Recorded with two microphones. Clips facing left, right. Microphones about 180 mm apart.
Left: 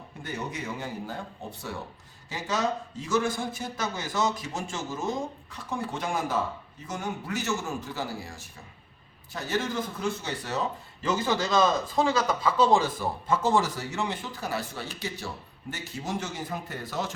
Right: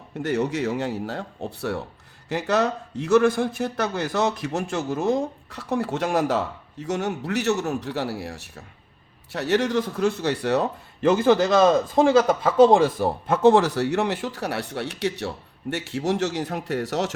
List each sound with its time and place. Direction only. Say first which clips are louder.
0.2 s a man's voice: right 11 dB; 70° right (ahead or behind)